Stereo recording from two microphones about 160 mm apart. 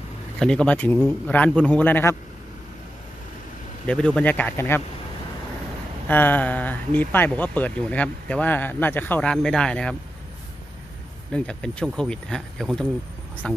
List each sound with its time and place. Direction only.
0.4 s speech: 5° left (ahead or behind)
3.8 s speech: 5° left (ahead or behind)
6.0 s speech: 10° left (ahead or behind)
11.3 s speech: 5° left (ahead or behind)